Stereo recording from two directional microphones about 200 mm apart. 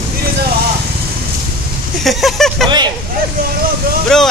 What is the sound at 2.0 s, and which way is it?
Speech, centre (ahead or behind).